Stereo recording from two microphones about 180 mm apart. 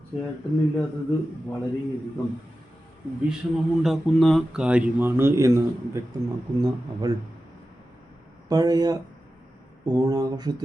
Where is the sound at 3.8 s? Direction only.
Centre (ahead or behind); by 5.6 s 15° right (ahead or behind).